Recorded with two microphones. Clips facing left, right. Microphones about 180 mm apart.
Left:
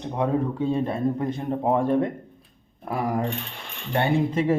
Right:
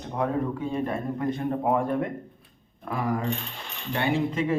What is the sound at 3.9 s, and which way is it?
Speech, 40° left (ahead or behind).